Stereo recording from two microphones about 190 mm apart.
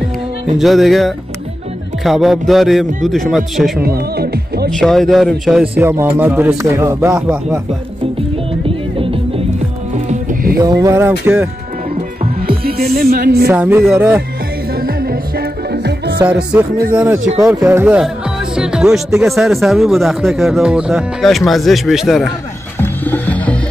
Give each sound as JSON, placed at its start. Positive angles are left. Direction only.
{"t": 0.6, "sound": "speech", "side_deg": 0}
{"t": 3.8, "sound": "speech", "side_deg": -55}
{"t": 4.6, "sound": "a man's voice", "side_deg": 0}
{"t": 8.6, "sound": "music", "side_deg": -30}
{"t": 10.0, "sound": "music", "side_deg": -50}
{"t": 10.6, "sound": "a man's voice", "side_deg": -20}
{"t": 12.2, "sound": "music", "side_deg": -50}
{"t": 13.5, "sound": "speech", "side_deg": -10}
{"t": 14.8, "sound": "music", "side_deg": -50}
{"t": 16.3, "sound": "a man's voice", "side_deg": -10}
{"t": 22.8, "sound": "music", "side_deg": 10}